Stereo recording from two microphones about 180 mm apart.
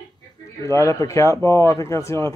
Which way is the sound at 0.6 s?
15° left (ahead or behind).